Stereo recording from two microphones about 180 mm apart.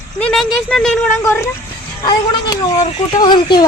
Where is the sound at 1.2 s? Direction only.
15° left (ahead or behind).